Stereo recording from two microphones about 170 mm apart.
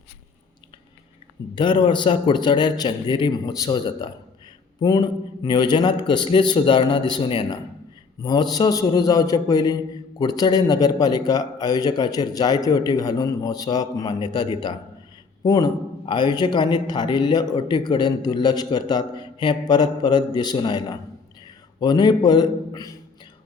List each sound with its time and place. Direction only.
1.5 s a man's voice: 30° left (ahead or behind)